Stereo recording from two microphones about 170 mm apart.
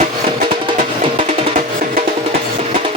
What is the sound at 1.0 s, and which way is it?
Music, 35° right (ahead or behind).